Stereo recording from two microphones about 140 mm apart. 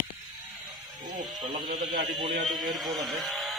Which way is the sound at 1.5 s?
90° right.